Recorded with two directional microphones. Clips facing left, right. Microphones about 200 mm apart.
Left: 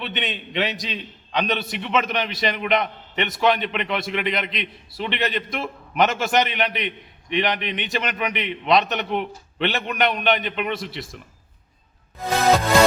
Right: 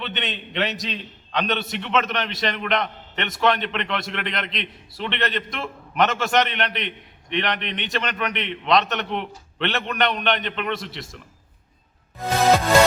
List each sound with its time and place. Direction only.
0.0 s a man's voice: centre (ahead or behind)